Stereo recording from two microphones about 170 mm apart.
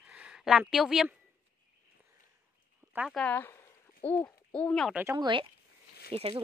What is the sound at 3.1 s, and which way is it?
Speech, 10° left (ahead or behind).